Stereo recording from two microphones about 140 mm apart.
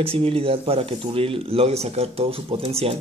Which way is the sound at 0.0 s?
45° right (ahead or behind).